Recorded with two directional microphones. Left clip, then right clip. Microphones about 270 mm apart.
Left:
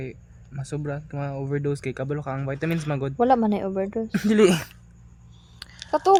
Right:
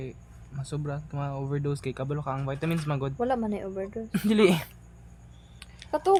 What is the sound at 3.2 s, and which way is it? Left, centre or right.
Speech, left.